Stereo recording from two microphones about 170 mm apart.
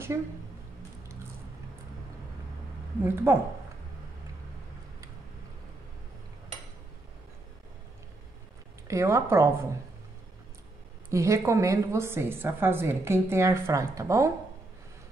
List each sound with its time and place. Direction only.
3.0 s a woman's voice: 15° right (ahead or behind)
8.8 s a woman's voice: 15° right (ahead or behind)
11.1 s a woman's voice: 15° right (ahead or behind)